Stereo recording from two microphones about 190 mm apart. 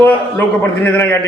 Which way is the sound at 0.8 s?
10° left (ahead or behind).